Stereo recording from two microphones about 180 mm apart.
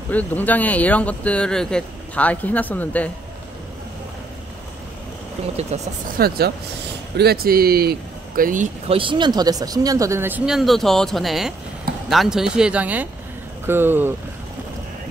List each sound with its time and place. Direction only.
0.1 s speech: 10° left (ahead or behind)
5.7 s speech: 40° right (ahead or behind)
6.1 s speech: 60° right (ahead or behind)
8.8 s speech: 30° right (ahead or behind); by 14.1 s 10° right (ahead or behind)